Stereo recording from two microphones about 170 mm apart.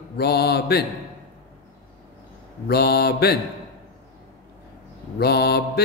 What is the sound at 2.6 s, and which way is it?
Speech, 70° left (ahead or behind).